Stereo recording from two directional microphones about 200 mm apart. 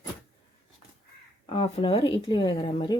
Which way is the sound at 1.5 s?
25° left (ahead or behind).